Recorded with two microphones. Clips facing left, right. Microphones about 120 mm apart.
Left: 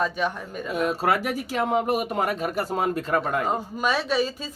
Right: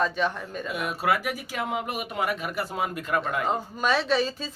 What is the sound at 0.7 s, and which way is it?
Speech, 35° left (ahead or behind).